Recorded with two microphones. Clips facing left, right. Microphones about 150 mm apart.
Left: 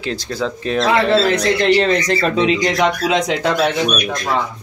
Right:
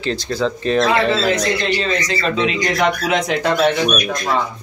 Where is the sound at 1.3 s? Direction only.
65° left (ahead or behind).